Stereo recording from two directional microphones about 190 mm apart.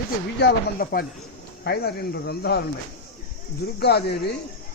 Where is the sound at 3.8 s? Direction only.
60° left (ahead or behind).